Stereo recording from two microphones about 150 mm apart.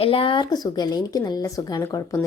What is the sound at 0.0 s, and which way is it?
Speech, 35° left (ahead or behind).